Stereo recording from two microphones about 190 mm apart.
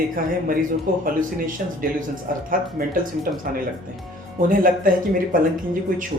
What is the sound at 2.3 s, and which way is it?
Speech, 50° right (ahead or behind).